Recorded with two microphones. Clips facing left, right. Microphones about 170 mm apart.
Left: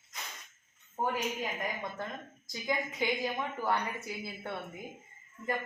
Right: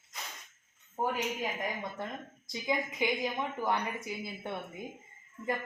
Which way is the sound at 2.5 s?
15° right (ahead or behind).